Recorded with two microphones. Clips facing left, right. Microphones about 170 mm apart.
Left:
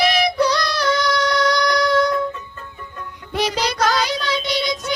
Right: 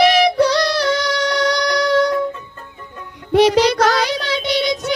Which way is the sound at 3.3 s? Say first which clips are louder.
Right 9 dB; 65° right (ahead or behind).